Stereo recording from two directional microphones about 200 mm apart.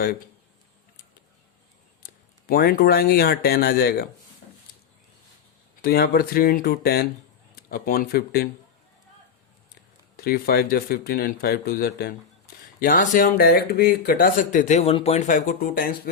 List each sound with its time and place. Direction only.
2.5 s speech: 50° left (ahead or behind)
4.4 s a sound: 45° left (ahead or behind)
5.8 s speech: 50° left (ahead or behind)
10.2 s speech: 50° left (ahead or behind)